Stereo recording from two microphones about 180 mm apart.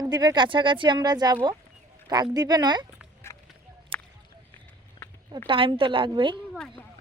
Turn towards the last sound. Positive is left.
turn(degrees=-25)  # may be behind; listen again after turning